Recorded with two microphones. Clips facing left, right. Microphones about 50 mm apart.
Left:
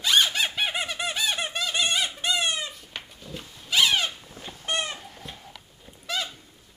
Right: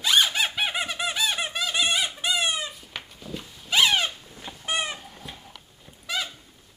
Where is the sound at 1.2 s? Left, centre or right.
Centre.